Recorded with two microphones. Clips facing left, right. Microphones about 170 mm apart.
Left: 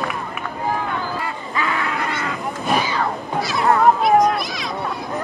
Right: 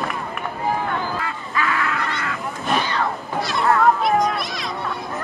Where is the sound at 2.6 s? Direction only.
5° left (ahead or behind).